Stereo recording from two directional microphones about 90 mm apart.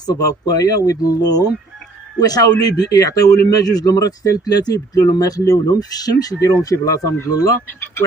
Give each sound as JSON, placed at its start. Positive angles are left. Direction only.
{"t": 0.0, "sound": "speech", "side_deg": 45}